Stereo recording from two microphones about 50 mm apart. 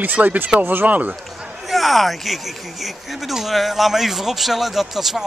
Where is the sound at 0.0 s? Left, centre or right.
Right.